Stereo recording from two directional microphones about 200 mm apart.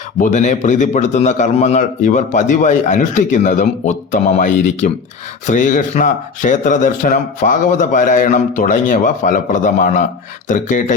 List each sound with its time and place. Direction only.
0.2 s a man's voice: 40° left (ahead or behind)